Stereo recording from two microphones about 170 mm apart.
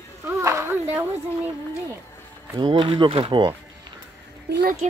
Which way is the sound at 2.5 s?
30° right (ahead or behind).